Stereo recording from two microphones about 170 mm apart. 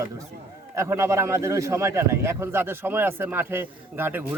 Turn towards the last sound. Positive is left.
turn(degrees=-15)  # may be behind; listen again after turning